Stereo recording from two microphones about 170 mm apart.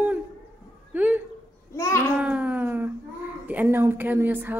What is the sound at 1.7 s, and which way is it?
Babbling, 15° left (ahead or behind).